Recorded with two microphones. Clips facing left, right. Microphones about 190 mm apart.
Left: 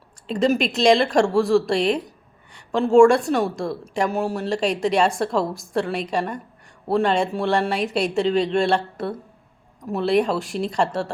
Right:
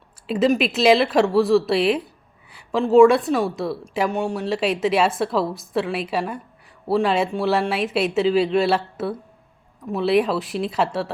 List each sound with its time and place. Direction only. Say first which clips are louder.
0.3 s a woman's voice: right 1 dB; 5° right (ahead or behind)